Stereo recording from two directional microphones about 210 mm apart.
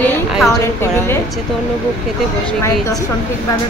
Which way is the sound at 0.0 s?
5° left (ahead or behind).